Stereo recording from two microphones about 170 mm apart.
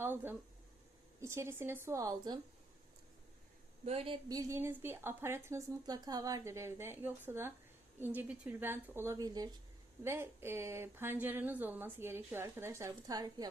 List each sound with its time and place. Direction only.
0.0 s a woman's voice: 15° right (ahead or behind)
3.8 s a woman's voice: 35° right (ahead or behind)